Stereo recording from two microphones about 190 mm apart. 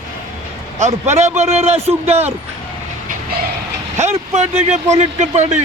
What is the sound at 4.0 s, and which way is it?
Speech, 35° right (ahead or behind).